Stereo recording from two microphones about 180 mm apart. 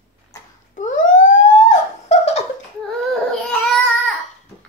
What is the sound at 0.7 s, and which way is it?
Police car, 45° left (ahead or behind).